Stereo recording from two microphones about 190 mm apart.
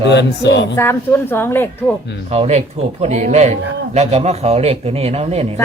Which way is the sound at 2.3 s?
35° right (ahead or behind).